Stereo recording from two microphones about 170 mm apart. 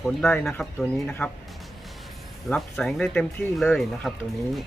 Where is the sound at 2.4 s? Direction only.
5° left (ahead or behind).